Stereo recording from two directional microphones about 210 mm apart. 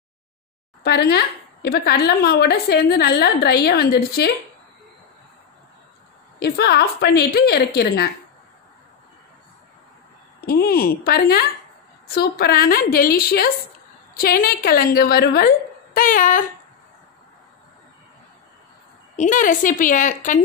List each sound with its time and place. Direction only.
0.8 s a woman's voice: 50° left (ahead or behind)
6.4 s a woman's voice: 50° left (ahead or behind)
10.4 s a woman's voice: 45° left (ahead or behind)
19.1 s a woman's voice: 40° left (ahead or behind)